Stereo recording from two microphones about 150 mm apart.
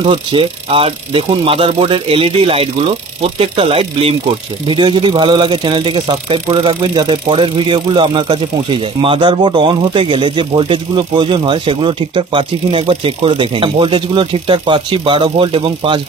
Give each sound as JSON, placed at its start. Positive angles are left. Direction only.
{"t": 0.0, "sound": "speech", "side_deg": -40}